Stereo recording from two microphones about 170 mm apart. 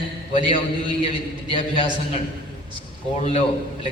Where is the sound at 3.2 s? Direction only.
35° left (ahead or behind).